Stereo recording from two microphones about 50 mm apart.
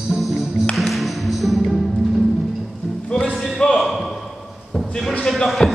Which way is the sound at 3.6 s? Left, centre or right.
Centre.